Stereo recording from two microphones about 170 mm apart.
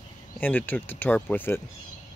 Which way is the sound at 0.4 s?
10° left (ahead or behind).